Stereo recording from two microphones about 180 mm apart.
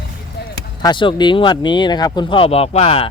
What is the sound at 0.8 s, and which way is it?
Speech, 25° left (ahead or behind).